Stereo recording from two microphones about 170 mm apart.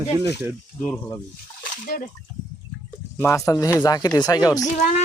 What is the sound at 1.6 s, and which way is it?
Splash, 55° left (ahead or behind).